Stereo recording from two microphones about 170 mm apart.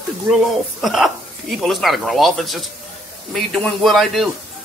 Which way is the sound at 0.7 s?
Centre (ahead or behind).